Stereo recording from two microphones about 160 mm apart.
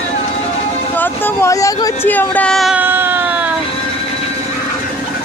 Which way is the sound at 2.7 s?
15° right (ahead or behind).